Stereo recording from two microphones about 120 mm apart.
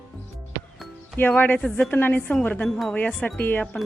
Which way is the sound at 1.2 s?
15° left (ahead or behind).